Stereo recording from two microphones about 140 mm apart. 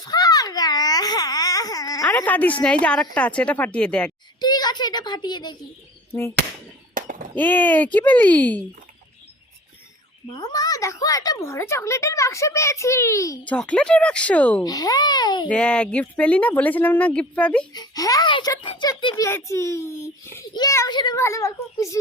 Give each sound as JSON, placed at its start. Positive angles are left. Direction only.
{"t": 0.0, "sound": "baby cry", "side_deg": 30}
{"t": 2.0, "sound": "speech", "side_deg": 10}
{"t": 4.4, "sound": "a child's voice", "side_deg": 30}
{"t": 6.1, "sound": "chop", "side_deg": 15}
{"t": 6.9, "sound": "a sound", "side_deg": -70}
{"t": 7.3, "sound": "speech", "side_deg": 10}
{"t": 10.3, "sound": "a woman's voice", "side_deg": 25}
{"t": 13.4, "sound": "speech", "side_deg": 10}
{"t": 14.6, "sound": "a woman's voice", "side_deg": 25}
{"t": 15.4, "sound": "speech", "side_deg": 10}
{"t": 17.7, "sound": "a woman's voice", "side_deg": 25}
{"t": 20.5, "sound": "a child's voice", "side_deg": 30}